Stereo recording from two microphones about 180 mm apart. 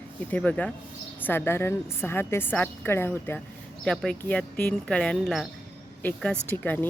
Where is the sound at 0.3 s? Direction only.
10° left (ahead or behind).